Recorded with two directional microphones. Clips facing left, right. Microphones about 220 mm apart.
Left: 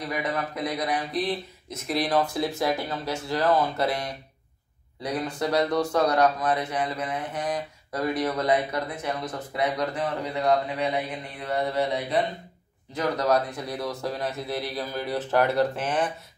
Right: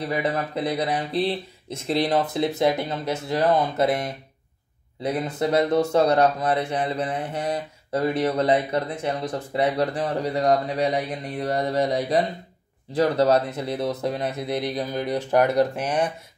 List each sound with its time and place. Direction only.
0.0 s speech: 30° right (ahead or behind); by 16.1 s 10° right (ahead or behind)